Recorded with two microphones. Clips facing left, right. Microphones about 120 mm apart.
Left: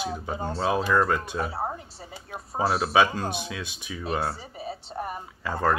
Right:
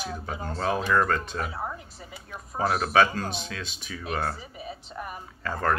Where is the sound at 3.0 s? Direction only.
15° left (ahead or behind).